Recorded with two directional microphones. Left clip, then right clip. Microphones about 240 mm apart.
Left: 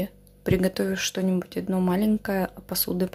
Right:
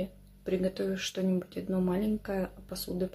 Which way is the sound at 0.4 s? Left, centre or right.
Left.